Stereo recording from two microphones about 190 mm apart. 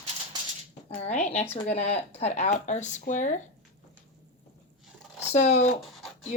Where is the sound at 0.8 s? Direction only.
35° left (ahead or behind).